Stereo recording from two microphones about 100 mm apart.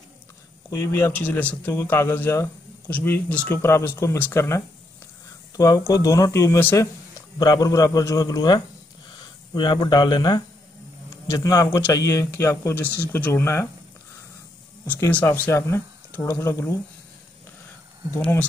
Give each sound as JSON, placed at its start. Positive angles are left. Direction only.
{"t": 0.7, "sound": "speech", "side_deg": 25}
{"t": 15.0, "sound": "speech", "side_deg": 15}
{"t": 15.5, "sound": "speech", "side_deg": 30}